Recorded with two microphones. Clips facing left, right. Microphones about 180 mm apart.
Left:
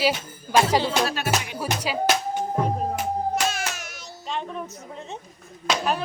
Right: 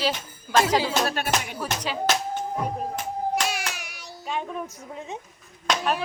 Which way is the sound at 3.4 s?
15° right (ahead or behind).